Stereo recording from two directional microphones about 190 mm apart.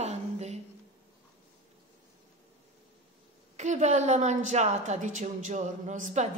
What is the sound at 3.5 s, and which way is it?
A woman's voice, 40° right (ahead or behind).